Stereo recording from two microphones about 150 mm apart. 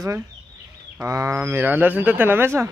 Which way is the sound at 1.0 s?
20° right (ahead or behind).